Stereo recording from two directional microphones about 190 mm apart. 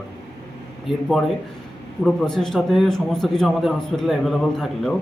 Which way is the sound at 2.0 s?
Centre (ahead or behind).